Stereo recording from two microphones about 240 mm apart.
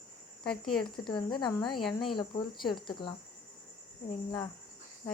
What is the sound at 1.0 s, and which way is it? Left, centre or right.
Speech, centre.